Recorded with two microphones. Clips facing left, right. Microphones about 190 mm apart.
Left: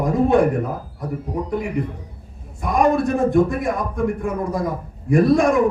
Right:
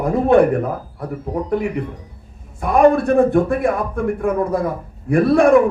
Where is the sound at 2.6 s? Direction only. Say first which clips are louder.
Right 4 dB; 60° right (ahead or behind).